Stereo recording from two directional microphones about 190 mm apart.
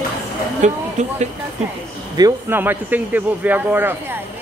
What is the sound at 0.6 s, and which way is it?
Speech, 35° right (ahead or behind).